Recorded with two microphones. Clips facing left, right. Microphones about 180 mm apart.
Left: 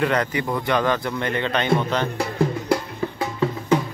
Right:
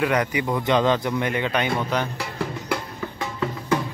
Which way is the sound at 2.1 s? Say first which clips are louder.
Left 7 dB; 40° left (ahead or behind).